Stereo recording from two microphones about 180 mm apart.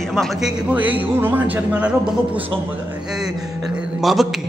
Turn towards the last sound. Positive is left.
turn(degrees=0)  # may be behind; listen again after turning